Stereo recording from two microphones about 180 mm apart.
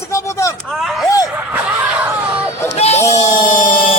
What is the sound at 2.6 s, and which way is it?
Music, 35° left (ahead or behind).